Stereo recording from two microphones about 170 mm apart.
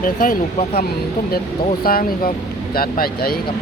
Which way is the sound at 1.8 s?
60° left (ahead or behind).